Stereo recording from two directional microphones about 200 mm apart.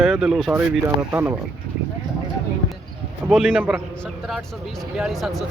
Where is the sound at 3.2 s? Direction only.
5° right (ahead or behind).